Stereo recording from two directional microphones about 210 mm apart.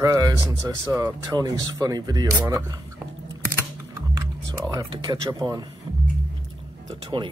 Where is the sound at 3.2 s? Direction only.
15° right (ahead or behind).